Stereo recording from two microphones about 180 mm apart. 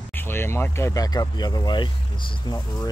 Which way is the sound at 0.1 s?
10° left (ahead or behind).